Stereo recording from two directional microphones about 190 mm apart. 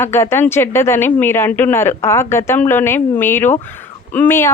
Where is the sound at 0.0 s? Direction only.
15° left (ahead or behind).